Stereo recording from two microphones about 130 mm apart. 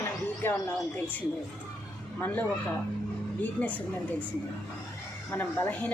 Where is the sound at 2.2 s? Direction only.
15° left (ahead or behind).